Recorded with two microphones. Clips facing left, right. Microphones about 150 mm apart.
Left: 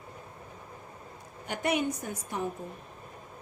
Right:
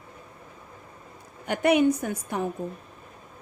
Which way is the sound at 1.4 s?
70° right (ahead or behind).